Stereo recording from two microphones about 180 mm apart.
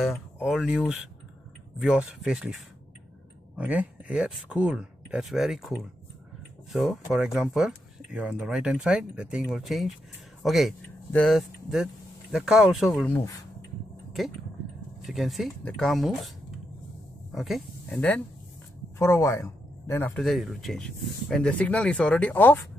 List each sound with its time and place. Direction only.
0.4 s speech: 5° right (ahead or behind)
13.1 s speech: 20° left (ahead or behind)
14.2 s speech: centre (ahead or behind)
17.3 s speech: centre (ahead or behind)
20.2 s speech: centre (ahead or behind)